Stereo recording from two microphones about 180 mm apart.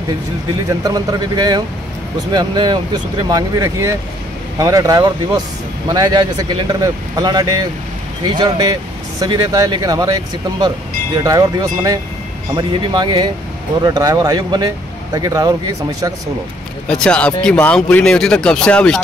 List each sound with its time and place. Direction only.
0.8 s speech: 20° right (ahead or behind)
16.8 s speech: 5° left (ahead or behind)